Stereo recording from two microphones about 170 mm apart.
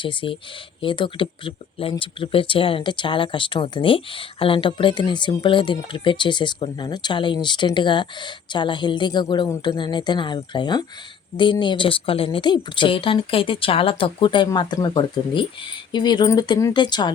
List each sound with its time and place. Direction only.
0.0 s speech: 30° left (ahead or behind)